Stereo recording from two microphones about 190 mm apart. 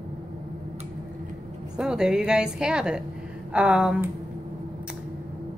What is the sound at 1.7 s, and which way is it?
Speech, 5° right (ahead or behind).